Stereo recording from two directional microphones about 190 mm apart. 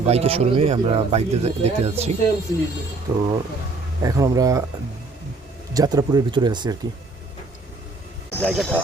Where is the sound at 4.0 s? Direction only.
20° right (ahead or behind).